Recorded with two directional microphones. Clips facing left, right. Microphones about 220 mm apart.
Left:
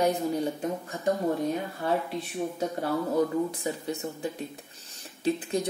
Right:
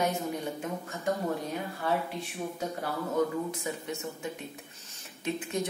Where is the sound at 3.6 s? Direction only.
35° left (ahead or behind).